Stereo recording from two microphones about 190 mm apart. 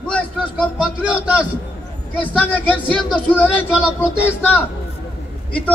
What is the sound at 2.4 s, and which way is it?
A man's voice, 10° left (ahead or behind).